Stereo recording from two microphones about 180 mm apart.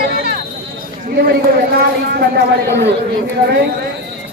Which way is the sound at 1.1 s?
60° right (ahead or behind).